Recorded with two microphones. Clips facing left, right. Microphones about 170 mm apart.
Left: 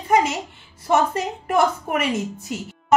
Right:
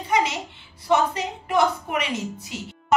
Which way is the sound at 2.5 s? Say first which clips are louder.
Left 3 dB; 45° left (ahead or behind).